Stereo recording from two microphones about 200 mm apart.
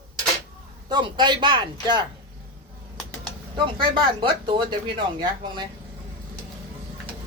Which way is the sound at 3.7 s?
25° right (ahead or behind).